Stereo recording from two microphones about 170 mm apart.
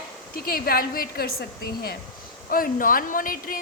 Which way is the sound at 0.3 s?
60° left (ahead or behind).